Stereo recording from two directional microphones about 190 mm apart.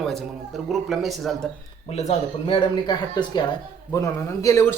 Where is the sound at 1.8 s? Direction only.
35° left (ahead or behind).